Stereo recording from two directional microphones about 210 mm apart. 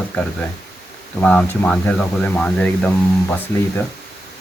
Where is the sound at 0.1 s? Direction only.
5° left (ahead or behind).